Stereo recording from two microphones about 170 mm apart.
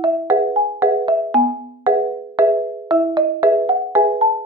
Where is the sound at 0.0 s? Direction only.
35° right (ahead or behind).